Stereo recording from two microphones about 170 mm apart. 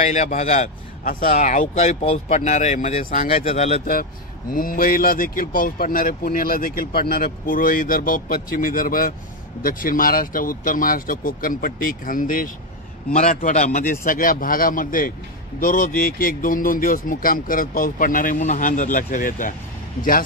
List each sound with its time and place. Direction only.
0.0 s speech: 45° left (ahead or behind)
3.8 s speech: 60° left (ahead or behind)